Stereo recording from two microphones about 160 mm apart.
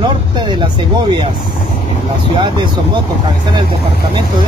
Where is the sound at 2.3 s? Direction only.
30° right (ahead or behind).